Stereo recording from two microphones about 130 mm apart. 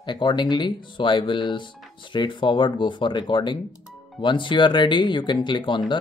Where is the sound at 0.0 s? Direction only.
35° left (ahead or behind).